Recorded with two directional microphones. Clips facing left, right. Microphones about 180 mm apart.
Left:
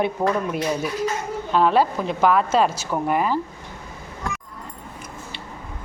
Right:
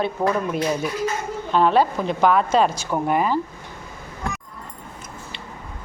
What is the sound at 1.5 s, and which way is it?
A woman's voice, 5° left (ahead or behind).